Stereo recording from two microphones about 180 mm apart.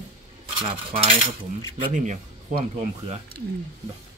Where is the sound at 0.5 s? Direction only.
30° right (ahead or behind).